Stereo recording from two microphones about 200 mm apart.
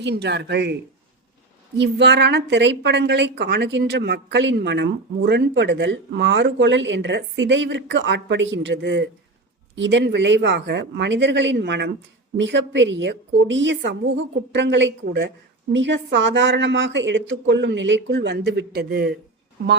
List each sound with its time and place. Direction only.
0.0 s a woman's voice: 60° right (ahead or behind)
1.8 s a woman's voice: 60° right (ahead or behind)